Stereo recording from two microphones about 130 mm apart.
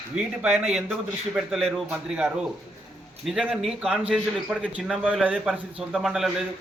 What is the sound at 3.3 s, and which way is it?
A man's voice, 5° right (ahead or behind).